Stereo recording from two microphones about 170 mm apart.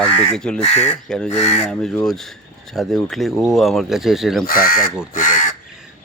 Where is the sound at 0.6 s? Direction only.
40° left (ahead or behind).